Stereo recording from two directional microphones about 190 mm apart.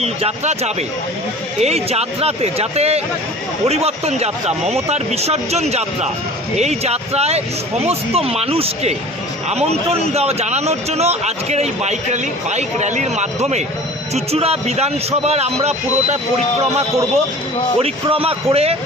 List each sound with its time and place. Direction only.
0.0 s speech: 35° right (ahead or behind)
17.7 s speech: 30° right (ahead or behind)